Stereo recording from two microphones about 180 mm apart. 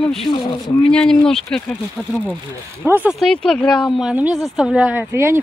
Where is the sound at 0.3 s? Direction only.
30° left (ahead or behind).